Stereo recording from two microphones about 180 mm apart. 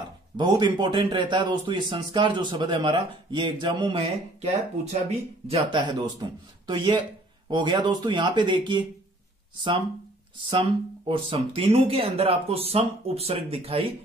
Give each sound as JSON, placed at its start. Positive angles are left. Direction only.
{"t": 0.4, "sound": "a man's voice", "side_deg": -25}
{"t": 5.5, "sound": "a man's voice", "side_deg": -30}
{"t": 10.4, "sound": "speech", "side_deg": -30}